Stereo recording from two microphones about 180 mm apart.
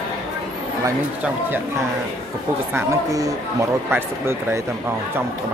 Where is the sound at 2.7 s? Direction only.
15° right (ahead or behind).